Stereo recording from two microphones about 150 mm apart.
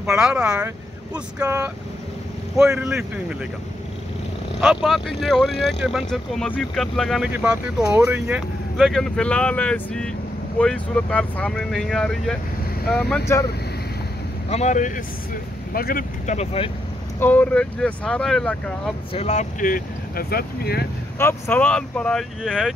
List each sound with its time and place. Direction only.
0.0 s speech: 5° right (ahead or behind)
1.4 s speech: 20° right (ahead or behind)
2.8 s speech: 5° right (ahead or behind)
4.6 s speech: centre (ahead or behind)
7.2 s speech: 10° right (ahead or behind)
8.7 s speech: centre (ahead or behind)
13.2 s speech: 20° left (ahead or behind)
14.5 s speech: 50° left (ahead or behind)
15.7 s speech: 75° left (ahead or behind)
16.3 s speech: 40° left (ahead or behind)
17.2 s speech: 10° left (ahead or behind)
19.1 s speech: 50° left (ahead or behind); by 20.8 s 90° left
21.2 s speech: 15° left (ahead or behind)